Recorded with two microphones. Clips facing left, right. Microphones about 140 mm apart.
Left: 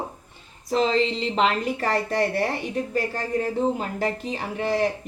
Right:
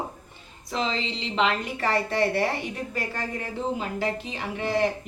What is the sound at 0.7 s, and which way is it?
A woman's voice, 45° left (ahead or behind).